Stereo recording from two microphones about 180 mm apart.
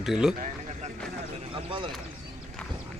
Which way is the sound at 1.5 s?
30° right (ahead or behind).